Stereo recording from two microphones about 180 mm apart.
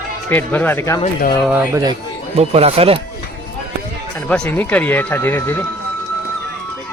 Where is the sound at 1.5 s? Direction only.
20° right (ahead or behind).